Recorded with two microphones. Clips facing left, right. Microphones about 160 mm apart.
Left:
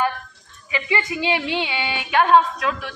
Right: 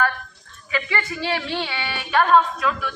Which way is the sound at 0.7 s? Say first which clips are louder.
Left 2 dB; 15° left (ahead or behind).